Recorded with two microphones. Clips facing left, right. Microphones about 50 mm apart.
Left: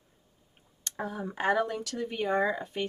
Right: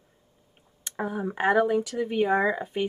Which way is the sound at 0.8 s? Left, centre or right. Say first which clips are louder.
Right 5 dB; centre.